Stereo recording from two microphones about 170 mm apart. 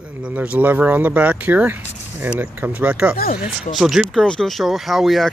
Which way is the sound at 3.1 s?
60° left (ahead or behind).